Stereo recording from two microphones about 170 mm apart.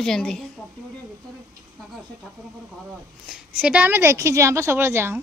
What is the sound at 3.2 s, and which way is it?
A woman's voice, 5° right (ahead or behind).